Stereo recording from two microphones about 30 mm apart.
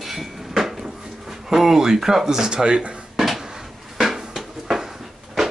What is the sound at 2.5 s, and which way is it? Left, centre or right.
Speech, right.